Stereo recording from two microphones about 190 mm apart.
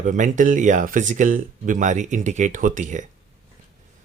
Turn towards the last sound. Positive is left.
turn(degrees=-40)  # may be behind; listen again after turning